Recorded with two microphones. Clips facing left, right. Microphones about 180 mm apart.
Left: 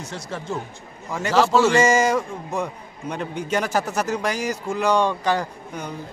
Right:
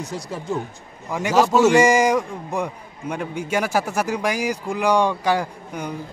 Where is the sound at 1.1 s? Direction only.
15° right (ahead or behind).